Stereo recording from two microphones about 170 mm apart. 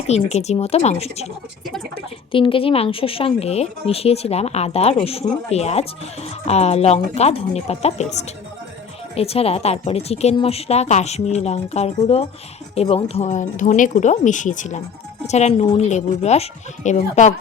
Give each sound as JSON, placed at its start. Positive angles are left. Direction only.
{"t": 0.1, "sound": "speech", "side_deg": 40}
{"t": 2.3, "sound": "speech", "side_deg": 30}
{"t": 9.1, "sound": "speech", "side_deg": 35}